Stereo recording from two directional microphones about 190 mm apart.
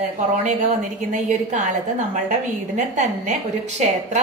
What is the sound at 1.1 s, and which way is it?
A woman's voice, 40° right (ahead or behind).